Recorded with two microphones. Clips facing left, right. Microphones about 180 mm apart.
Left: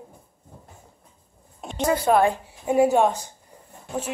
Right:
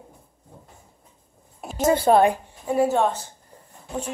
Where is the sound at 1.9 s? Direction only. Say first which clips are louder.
Right 2 dB; 30° right (ahead or behind).